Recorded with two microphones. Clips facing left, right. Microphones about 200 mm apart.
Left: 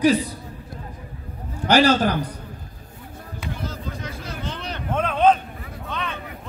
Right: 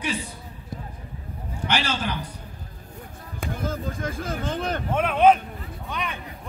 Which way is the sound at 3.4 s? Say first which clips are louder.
Right 3 dB; 50° right (ahead or behind).